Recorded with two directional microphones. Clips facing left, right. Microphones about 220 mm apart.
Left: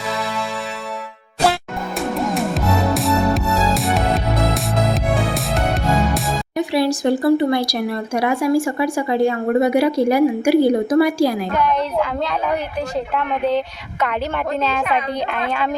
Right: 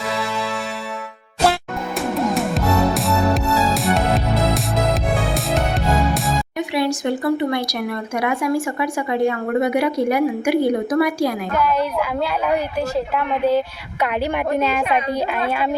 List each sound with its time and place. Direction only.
2.0 s music: centre (ahead or behind)
6.6 s speech: 35° left (ahead or behind)
11.5 s a woman's voice: 5° right (ahead or behind)